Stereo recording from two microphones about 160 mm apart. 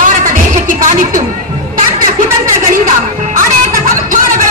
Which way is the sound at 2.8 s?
55° right (ahead or behind).